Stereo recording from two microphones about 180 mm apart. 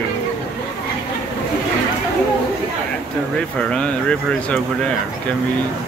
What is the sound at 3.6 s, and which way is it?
Speech, 5° left (ahead or behind).